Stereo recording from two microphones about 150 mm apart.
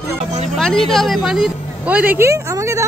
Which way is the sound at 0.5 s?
Centre (ahead or behind).